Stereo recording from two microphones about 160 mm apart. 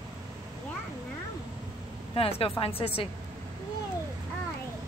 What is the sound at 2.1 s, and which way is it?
Speech, 35° left (ahead or behind).